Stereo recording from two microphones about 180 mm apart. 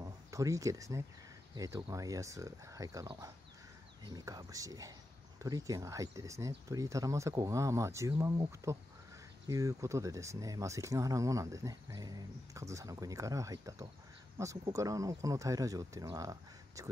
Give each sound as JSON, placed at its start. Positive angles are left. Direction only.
{"t": 0.0, "sound": "speech", "side_deg": -20}